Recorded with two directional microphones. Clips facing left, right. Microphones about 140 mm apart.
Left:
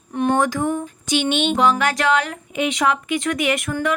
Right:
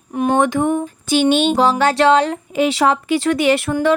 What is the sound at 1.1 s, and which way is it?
Speech, 35° right (ahead or behind).